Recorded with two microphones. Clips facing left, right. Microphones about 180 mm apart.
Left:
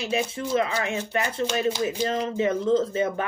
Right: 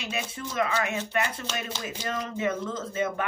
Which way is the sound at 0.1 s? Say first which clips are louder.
Left 10 dB; 30° left (ahead or behind).